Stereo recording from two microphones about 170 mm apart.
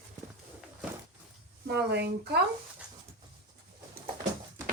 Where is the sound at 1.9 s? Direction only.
80° right.